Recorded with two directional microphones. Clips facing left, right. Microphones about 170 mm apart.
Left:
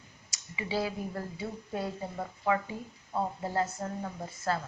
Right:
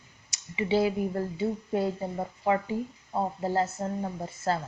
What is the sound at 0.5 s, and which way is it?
Speech, 25° right (ahead or behind).